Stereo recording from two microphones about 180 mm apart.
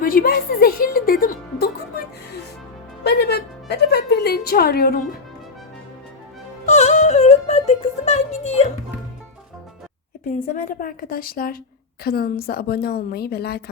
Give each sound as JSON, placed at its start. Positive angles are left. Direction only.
{"t": 0.0, "sound": "a woman's voice", "side_deg": 50}
{"t": 3.0, "sound": "a woman's voice", "side_deg": 65}
{"t": 6.7, "sound": "music", "side_deg": 40}
{"t": 8.0, "sound": "speech", "side_deg": 40}
{"t": 10.5, "sound": "a woman's voice", "side_deg": 50}